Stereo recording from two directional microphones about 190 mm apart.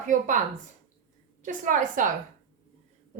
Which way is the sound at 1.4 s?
45° right (ahead or behind).